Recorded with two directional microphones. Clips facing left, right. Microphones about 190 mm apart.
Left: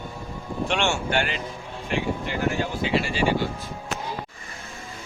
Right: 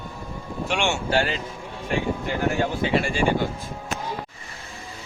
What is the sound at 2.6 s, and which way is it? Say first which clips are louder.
Speech: right 2 dB; 55° right (ahead or behind).